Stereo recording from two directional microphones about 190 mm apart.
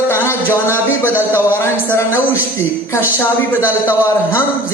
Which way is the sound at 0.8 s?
10° right (ahead or behind).